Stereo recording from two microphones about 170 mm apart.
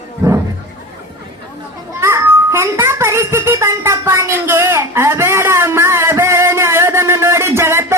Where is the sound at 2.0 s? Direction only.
15° right (ahead or behind).